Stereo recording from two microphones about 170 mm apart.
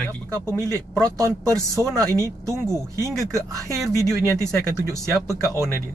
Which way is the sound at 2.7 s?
20° left (ahead or behind).